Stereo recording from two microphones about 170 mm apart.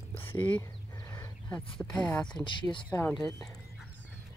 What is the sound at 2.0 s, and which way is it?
Speech, 5° left (ahead or behind).